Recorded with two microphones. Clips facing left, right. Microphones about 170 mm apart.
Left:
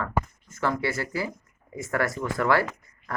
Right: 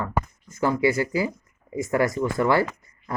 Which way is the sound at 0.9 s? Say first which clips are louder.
Right 6 dB; 20° right (ahead or behind).